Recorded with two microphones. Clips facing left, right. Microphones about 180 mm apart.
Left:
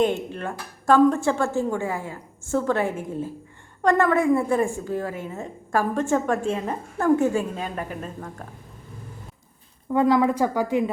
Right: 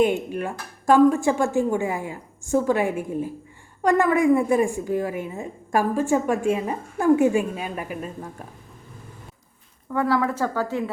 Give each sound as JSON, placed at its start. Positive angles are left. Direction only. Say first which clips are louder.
{"t": 0.0, "sound": "a woman's voice", "louder": "right 2 dB", "side_deg": -10}
{"t": 9.9, "sound": "a woman's voice", "louder": "left 3 dB", "side_deg": 20}